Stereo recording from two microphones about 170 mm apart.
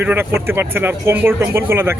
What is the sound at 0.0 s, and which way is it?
Speech, 10° right (ahead or behind).